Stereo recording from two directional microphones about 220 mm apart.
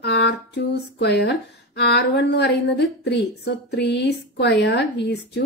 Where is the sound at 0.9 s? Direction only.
50° left (ahead or behind).